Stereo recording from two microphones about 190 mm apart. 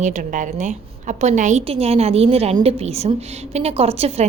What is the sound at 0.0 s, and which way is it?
A woman's voice, 40° right (ahead or behind).